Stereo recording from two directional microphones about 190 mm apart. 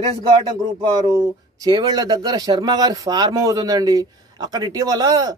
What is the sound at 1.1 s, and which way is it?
Speech, 20° right (ahead or behind).